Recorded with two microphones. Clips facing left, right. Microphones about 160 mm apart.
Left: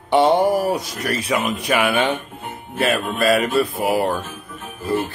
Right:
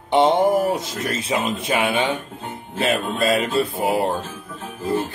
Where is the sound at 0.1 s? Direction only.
20° right (ahead or behind).